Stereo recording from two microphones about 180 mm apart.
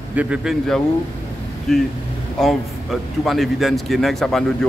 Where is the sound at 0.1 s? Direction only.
5° right (ahead or behind).